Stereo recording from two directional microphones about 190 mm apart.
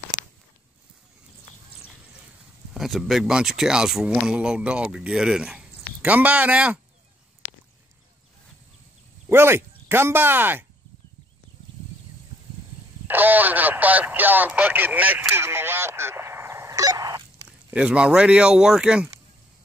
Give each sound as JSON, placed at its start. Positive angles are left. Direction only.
{"t": 0.1, "sound": "a sound", "side_deg": -20}
{"t": 2.7, "sound": "speech", "side_deg": 0}
{"t": 7.4, "sound": "a sound", "side_deg": 10}
{"t": 9.3, "sound": "speech", "side_deg": -10}
{"t": 13.0, "sound": "speech", "side_deg": -10}
{"t": 17.6, "sound": "speech", "side_deg": -5}